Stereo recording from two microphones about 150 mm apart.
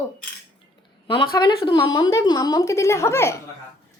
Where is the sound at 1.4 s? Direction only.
25° left (ahead or behind).